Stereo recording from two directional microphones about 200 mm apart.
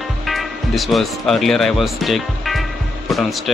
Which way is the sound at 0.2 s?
Centre (ahead or behind).